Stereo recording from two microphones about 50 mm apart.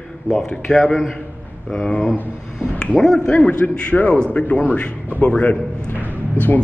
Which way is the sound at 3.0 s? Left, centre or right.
Centre.